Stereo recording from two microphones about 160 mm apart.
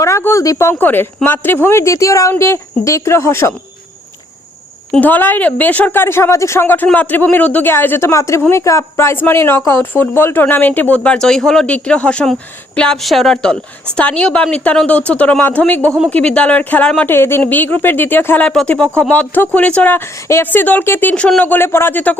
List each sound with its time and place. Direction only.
0.0 s a woman's voice: 15° left (ahead or behind)
4.9 s a woman's voice: 10° left (ahead or behind)